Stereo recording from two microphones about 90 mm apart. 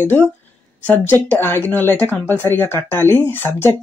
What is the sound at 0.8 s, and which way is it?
Speech, 20° left (ahead or behind).